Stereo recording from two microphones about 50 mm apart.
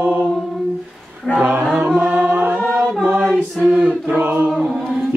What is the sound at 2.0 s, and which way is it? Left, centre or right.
Music, right.